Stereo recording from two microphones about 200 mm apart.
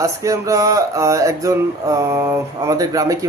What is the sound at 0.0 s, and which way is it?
Speech, 15° right (ahead or behind).